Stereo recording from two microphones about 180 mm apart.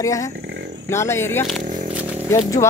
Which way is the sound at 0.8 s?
15° left (ahead or behind).